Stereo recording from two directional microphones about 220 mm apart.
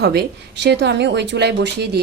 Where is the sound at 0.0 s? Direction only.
50° right (ahead or behind).